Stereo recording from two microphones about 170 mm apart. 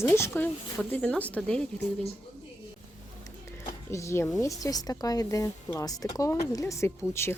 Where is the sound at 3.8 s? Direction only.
15° left (ahead or behind).